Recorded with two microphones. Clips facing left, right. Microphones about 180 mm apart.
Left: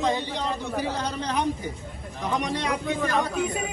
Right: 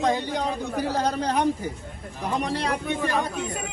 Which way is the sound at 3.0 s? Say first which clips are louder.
Left 1 dB; centre (ahead or behind).